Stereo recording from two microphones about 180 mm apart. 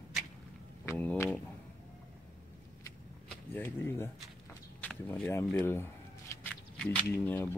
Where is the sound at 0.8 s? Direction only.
10° left (ahead or behind).